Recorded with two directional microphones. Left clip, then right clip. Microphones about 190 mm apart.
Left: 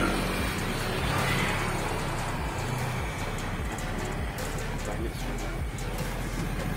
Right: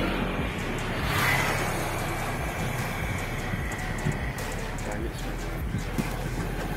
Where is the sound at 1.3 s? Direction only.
65° right (ahead or behind).